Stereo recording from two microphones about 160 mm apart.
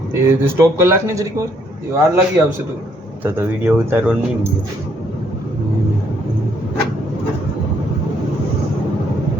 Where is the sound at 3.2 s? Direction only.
15° right (ahead or behind).